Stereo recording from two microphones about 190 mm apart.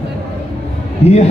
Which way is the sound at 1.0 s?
35° left (ahead or behind).